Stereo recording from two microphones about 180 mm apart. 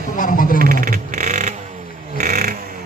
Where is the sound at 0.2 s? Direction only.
50° left (ahead or behind).